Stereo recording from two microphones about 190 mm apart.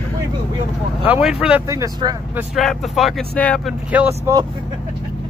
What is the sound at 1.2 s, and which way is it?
Speech, 5° right (ahead or behind).